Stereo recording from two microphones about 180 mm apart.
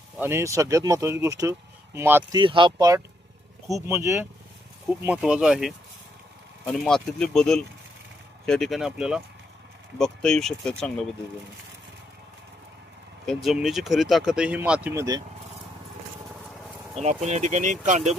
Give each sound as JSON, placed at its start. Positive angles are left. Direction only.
{"t": 0.2, "sound": "speech", "side_deg": -15}
{"t": 2.4, "sound": "speech", "side_deg": -25}
{"t": 13.2, "sound": "speech", "side_deg": 0}
{"t": 17.0, "sound": "speech", "side_deg": -40}